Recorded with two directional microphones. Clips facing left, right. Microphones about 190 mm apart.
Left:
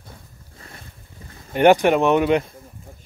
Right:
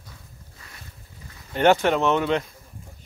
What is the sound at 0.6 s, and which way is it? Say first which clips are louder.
Boat: left 6 dB; 50° left (ahead or behind).